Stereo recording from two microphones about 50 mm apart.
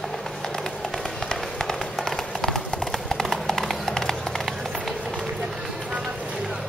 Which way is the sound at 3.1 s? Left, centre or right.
Centre.